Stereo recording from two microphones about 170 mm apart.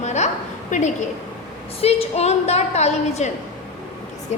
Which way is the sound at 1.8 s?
40° left (ahead or behind).